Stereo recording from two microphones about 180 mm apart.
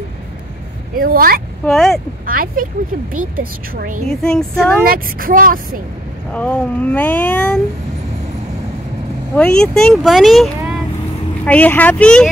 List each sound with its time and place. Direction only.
0.9 s speech: 55° right (ahead or behind)
1.7 s speech: 5° left (ahead or behind)
2.2 s speech: 50° right (ahead or behind)
4.1 s speech: 5° left (ahead or behind)
4.8 s speech: 50° right (ahead or behind)
6.3 s speech: 10° left (ahead or behind)
9.3 s speech: 5° left (ahead or behind)